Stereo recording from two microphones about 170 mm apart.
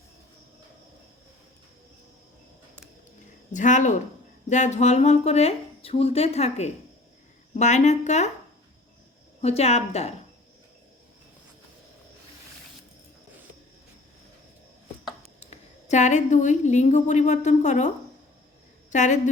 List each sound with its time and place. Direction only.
3.5 s speech: 45° left (ahead or behind)
9.4 s speech: 40° left (ahead or behind)
15.4 s a woman's voice: 40° left (ahead or behind)